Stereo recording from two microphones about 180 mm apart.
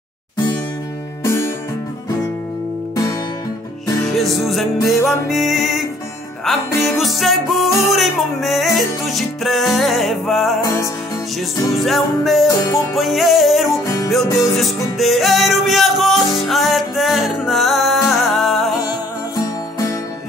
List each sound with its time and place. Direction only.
1.2 s music: 15° left (ahead or behind)
4.0 s music: centre (ahead or behind)
10.6 s music: 20° left (ahead or behind)
11.7 s music: centre (ahead or behind)
12.4 s music: 20° left (ahead or behind)
12.9 s music: centre (ahead or behind)
13.8 s music: 20° left (ahead or behind)
15.0 s music: centre (ahead or behind)
19.3 s music: 20° left (ahead or behind)